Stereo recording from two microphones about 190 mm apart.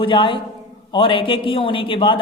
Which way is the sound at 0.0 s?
25° left (ahead or behind).